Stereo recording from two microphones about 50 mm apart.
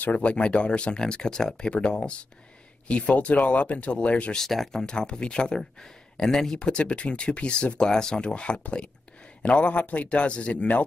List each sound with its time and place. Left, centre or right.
0.0 s speech: left
4.4 s speech: centre
4.8 s speech: centre